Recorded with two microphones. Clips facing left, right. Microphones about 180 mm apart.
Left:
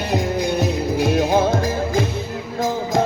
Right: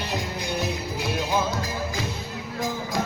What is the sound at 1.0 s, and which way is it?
Music, 55° left (ahead or behind).